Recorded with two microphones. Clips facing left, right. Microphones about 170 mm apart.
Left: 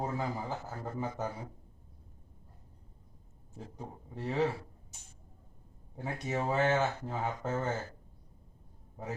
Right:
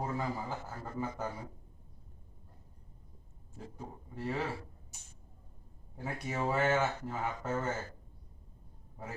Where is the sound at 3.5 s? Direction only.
20° left (ahead or behind).